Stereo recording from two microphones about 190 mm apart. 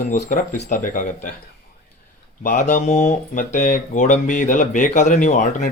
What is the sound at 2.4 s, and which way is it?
Speech, 40° left (ahead or behind).